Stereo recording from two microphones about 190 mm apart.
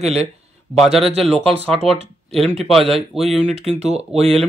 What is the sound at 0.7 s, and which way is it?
Speech, centre (ahead or behind).